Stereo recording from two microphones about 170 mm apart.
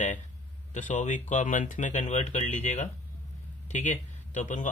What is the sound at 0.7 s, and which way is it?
Speech, 45° left (ahead or behind).